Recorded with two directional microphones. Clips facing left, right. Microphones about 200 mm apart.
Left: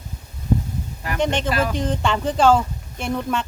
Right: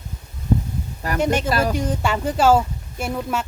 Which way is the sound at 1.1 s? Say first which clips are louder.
Right 1 dB; 10° right (ahead or behind).